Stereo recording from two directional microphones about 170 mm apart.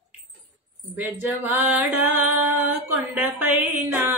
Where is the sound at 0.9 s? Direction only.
10° right (ahead or behind).